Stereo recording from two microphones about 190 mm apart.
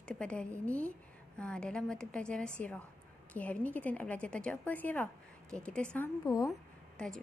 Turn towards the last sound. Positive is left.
turn(degrees=5)  # may be behind; listen again after turning